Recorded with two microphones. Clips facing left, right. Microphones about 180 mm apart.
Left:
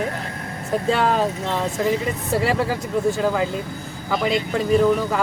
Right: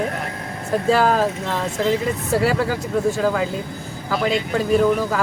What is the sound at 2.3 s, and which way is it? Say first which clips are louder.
Speech: right 1 dB; centre (ahead or behind).